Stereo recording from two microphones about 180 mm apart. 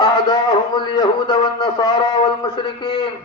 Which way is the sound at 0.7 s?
25° left (ahead or behind).